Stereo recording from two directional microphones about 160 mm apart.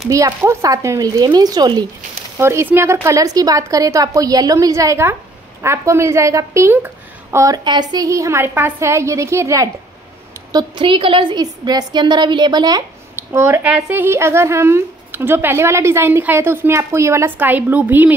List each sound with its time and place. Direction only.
0.1 s a woman's voice: 20° right (ahead or behind)
10.5 s a woman's voice: 30° right (ahead or behind); by 18.1 s 10° right (ahead or behind)